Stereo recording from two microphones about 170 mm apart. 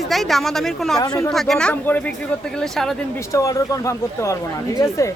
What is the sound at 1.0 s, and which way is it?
Speech, 20° left (ahead or behind).